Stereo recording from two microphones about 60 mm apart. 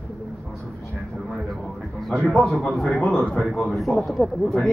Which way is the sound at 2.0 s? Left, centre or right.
Centre.